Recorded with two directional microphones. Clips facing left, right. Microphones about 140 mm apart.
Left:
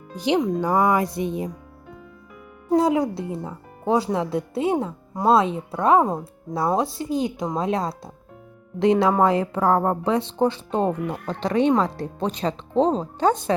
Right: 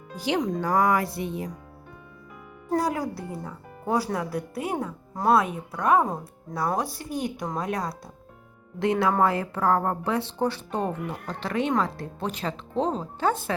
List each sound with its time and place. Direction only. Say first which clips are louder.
0.3 s speech: left 4 dB; 5° left (ahead or behind)
0.9 s speech: left 3 dB; 15° left (ahead or behind)
2.6 s speech: left 7 dB; 20° left (ahead or behind)
10.7 s speech: left 6 dB; 30° left (ahead or behind)